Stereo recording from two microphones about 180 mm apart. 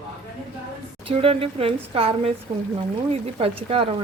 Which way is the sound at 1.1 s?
30° right (ahead or behind).